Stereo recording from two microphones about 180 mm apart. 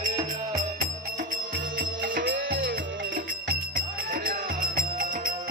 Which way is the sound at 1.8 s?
50° right (ahead or behind).